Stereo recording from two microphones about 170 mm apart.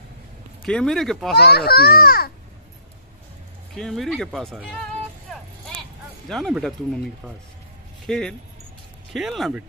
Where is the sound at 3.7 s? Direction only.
Centre (ahead or behind).